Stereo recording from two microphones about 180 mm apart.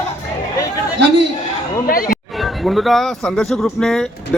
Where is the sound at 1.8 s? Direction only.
50° left (ahead or behind).